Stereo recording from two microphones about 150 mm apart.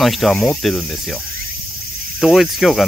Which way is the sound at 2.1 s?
Centre (ahead or behind).